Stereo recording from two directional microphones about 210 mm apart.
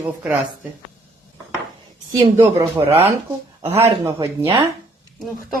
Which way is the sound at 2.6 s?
25° right (ahead or behind).